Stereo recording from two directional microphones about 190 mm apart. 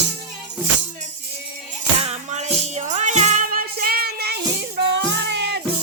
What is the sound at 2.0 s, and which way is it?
Music, 35° right (ahead or behind).